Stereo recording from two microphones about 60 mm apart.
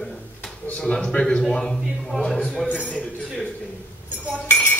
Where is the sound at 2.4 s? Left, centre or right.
Centre.